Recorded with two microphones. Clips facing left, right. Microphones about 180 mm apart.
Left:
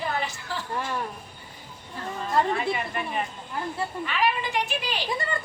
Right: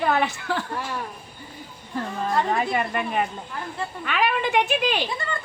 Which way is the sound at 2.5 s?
50° right (ahead or behind).